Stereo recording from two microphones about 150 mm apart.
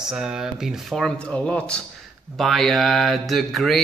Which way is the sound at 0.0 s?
5° right (ahead or behind).